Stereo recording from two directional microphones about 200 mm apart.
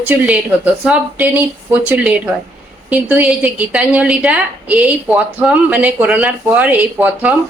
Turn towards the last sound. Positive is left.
turn(degrees=-5)  # may be behind; listen again after turning